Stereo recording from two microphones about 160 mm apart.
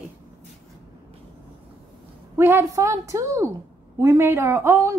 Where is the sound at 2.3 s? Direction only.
15° right (ahead or behind).